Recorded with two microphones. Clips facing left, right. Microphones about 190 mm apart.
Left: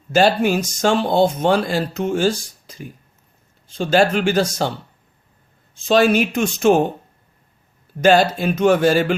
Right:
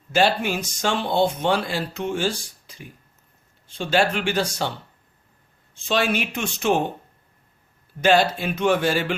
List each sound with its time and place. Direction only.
0.1 s a man's voice: 40° left (ahead or behind)
5.7 s a man's voice: 40° left (ahead or behind)
8.0 s a man's voice: 45° left (ahead or behind)